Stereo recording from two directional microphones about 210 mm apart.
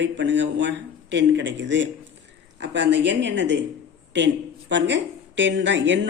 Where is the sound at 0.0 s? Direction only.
60° right (ahead or behind).